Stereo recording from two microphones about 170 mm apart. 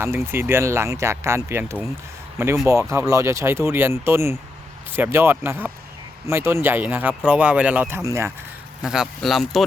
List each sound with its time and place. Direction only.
0.0 s speech: 15° right (ahead or behind)
8.8 s speech: 5° right (ahead or behind)